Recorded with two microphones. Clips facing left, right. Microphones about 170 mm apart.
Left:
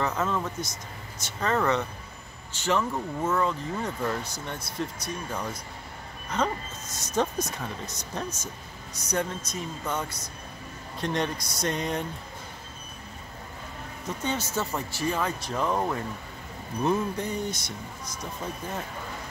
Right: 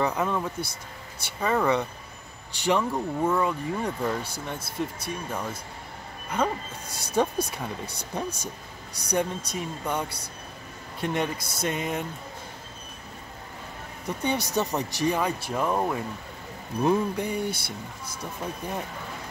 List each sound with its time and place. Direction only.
0.0 s speech: 15° right (ahead or behind)
4.6 s speech: 25° right (ahead or behind)
6.3 s speech: 10° right (ahead or behind)
11.3 s speech: 25° right (ahead or behind)
11.6 s speech: 5° right (ahead or behind)
14.0 s speech: 15° right (ahead or behind)